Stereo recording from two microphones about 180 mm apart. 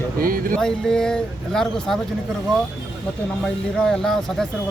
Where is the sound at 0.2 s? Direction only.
55° right (ahead or behind).